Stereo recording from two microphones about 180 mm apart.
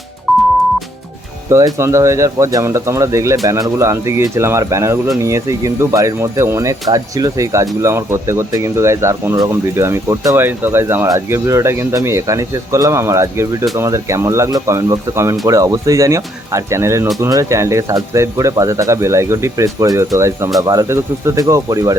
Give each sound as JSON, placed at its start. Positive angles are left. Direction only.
{"t": 1.5, "sound": "speech", "side_deg": -15}